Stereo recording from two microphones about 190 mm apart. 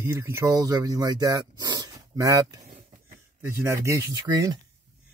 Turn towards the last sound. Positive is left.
turn(degrees=-20)  # may be behind; listen again after turning